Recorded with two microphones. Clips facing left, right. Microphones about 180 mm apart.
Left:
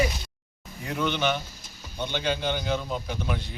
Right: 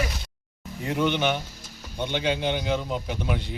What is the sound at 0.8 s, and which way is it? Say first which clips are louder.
A man's voice: right 3 dB; 20° right (ahead or behind).